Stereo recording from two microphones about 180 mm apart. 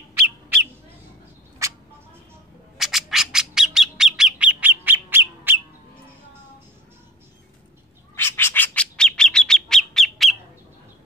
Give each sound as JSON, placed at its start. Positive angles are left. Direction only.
{"t": 1.6, "sound": "a sound", "side_deg": -15}
{"t": 2.8, "sound": "bird", "side_deg": 0}
{"t": 8.2, "sound": "bird", "side_deg": 15}